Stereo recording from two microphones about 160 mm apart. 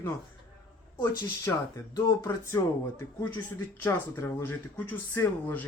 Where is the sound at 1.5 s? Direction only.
15° left (ahead or behind).